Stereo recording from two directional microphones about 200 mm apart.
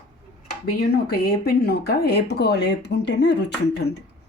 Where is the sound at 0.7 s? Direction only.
50° left (ahead or behind).